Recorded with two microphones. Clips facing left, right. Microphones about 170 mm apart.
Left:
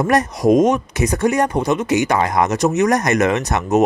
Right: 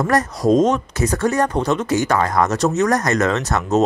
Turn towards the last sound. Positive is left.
turn(degrees=15)  # may be behind; listen again after turning